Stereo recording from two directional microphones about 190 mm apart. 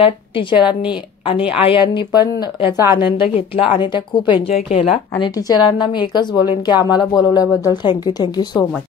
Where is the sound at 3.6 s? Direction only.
25° left (ahead or behind).